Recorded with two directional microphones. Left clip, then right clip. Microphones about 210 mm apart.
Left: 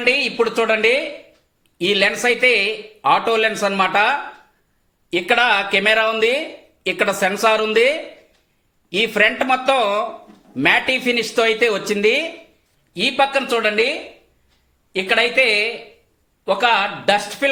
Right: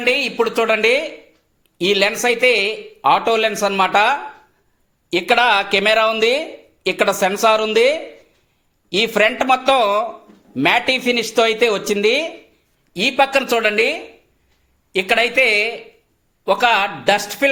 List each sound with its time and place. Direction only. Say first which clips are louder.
0.0 s speech: even; 20° right (ahead or behind); by 17.5 s 40° right (ahead or behind)